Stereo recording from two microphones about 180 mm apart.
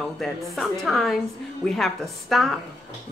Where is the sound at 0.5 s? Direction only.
Centre (ahead or behind).